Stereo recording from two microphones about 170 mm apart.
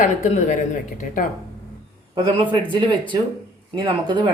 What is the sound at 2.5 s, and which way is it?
Speech, 30° right (ahead or behind).